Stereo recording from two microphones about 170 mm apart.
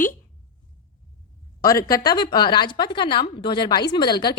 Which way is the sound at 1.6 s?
20° left (ahead or behind).